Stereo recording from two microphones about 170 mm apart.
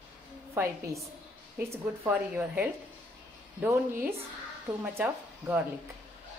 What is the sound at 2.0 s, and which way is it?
Speech, 10° right (ahead or behind).